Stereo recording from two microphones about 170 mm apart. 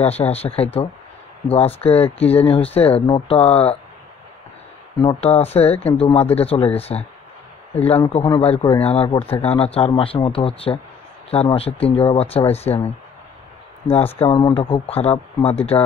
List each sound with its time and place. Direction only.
0.0 s speech: 35° left (ahead or behind)
1.8 s speech: 35° left (ahead or behind)
5.0 s speech: 35° left (ahead or behind)
6.9 s speech: 25° left (ahead or behind)
7.7 s speech: 35° left (ahead or behind)